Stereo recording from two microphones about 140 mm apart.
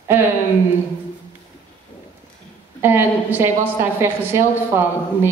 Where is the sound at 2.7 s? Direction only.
15° right (ahead or behind).